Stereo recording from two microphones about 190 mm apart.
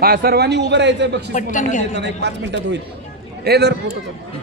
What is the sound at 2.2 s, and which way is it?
A man's voice, 65° right (ahead or behind).